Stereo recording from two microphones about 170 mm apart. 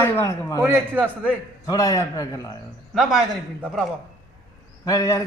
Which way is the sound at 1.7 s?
20° left (ahead or behind).